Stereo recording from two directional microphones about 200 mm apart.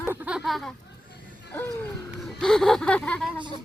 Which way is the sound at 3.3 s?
25° right (ahead or behind).